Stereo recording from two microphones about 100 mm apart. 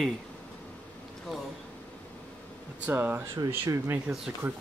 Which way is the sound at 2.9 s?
20° right (ahead or behind).